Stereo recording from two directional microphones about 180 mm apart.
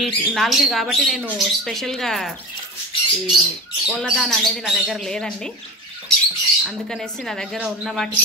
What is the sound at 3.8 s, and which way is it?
Speech, centre (ahead or behind).